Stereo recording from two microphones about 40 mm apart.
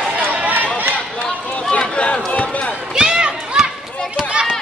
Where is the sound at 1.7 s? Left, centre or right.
Left.